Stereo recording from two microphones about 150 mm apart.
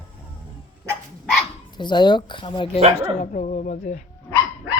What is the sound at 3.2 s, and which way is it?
Speech, 55° left (ahead or behind).